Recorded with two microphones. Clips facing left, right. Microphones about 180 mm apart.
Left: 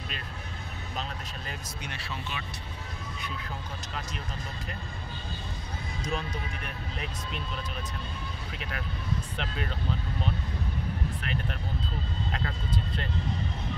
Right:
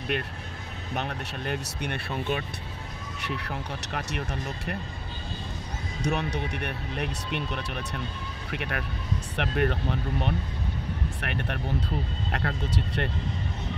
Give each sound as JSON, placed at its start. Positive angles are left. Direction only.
{"t": 0.1, "sound": "speech", "side_deg": -65}
{"t": 3.2, "sound": "speech", "side_deg": -75}
{"t": 6.0, "sound": "speech", "side_deg": -70}